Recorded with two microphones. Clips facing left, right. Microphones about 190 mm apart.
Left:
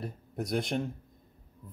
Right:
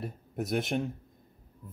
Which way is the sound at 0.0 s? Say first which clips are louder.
Right 1 dB; 5° right (ahead or behind).